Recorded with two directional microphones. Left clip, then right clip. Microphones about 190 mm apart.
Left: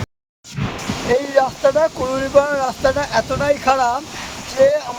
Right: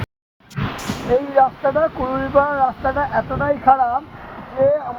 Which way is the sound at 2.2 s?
40° left (ahead or behind).